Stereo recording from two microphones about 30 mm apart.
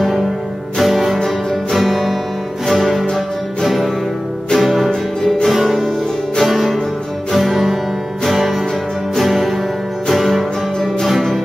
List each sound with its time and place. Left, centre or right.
0.7 s music: centre